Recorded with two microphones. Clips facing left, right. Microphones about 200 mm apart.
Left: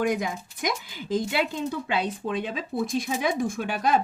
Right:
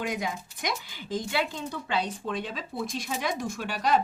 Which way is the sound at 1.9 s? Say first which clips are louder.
Right 1 dB; 55° left (ahead or behind).